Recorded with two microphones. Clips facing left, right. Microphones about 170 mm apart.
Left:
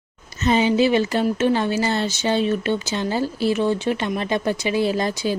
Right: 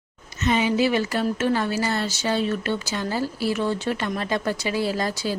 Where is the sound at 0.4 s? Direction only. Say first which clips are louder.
Left 3 dB; 30° left (ahead or behind).